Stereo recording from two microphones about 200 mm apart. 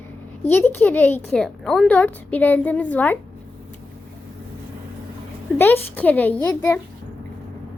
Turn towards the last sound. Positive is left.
turn(degrees=10)  # may be behind; listen again after turning